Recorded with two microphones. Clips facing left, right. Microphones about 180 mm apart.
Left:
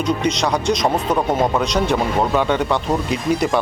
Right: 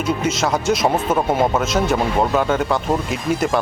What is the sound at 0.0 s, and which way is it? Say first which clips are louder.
Speech: left 1 dB; 5° right (ahead or behind).